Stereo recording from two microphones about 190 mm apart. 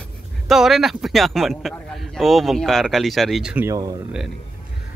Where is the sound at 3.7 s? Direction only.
20° right (ahead or behind).